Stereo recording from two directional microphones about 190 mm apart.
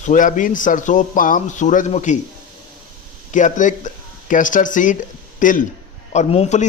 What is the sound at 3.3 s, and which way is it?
A man's voice, 40° left (ahead or behind).